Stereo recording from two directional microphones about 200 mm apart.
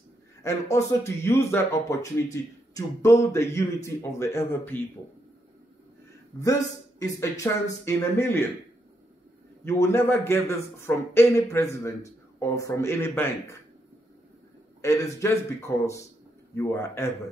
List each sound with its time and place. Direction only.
0.4 s speech: 15° left (ahead or behind)
6.4 s speech: 15° left (ahead or behind)
9.7 s speech: 15° left (ahead or behind)
14.8 s speech: 15° left (ahead or behind)